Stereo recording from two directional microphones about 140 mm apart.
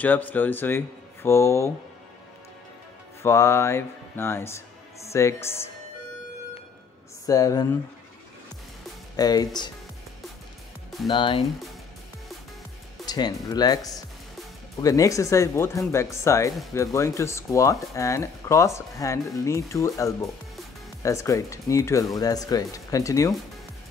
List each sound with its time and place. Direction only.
0.0 s speech: 10° left (ahead or behind)
3.2 s speech: 20° left (ahead or behind)
7.2 s speech: 25° left (ahead or behind)
9.1 s speech: 25° left (ahead or behind)
11.1 s speech: 35° left (ahead or behind)
13.0 s speech: 30° left (ahead or behind)